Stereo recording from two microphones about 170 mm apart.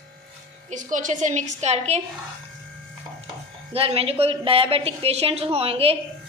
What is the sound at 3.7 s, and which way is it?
A woman's voice, 35° right (ahead or behind).